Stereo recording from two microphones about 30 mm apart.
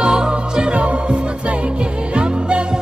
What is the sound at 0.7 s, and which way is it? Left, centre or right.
Music, right.